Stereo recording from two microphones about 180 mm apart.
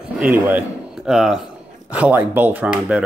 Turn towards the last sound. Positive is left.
turn(degrees=-5)  # may be behind; listen again after turning